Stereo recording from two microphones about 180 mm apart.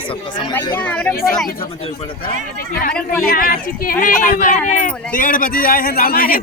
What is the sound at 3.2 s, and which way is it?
A man's voice, 55° left (ahead or behind).